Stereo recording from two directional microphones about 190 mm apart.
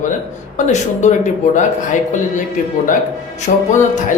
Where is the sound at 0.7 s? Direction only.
40° left (ahead or behind).